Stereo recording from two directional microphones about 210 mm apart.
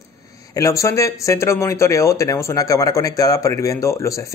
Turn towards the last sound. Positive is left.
turn(degrees=15)  # may be behind; listen again after turning